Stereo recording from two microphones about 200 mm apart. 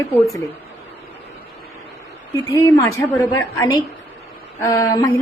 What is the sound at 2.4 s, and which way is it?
A woman's voice, 15° left (ahead or behind).